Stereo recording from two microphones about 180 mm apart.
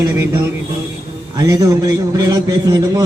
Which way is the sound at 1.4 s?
20° right (ahead or behind).